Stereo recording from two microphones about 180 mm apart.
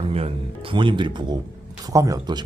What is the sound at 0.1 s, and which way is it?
Speech, 30° right (ahead or behind).